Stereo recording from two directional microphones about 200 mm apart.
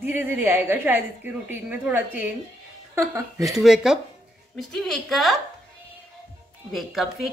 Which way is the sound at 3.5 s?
Centre (ahead or behind).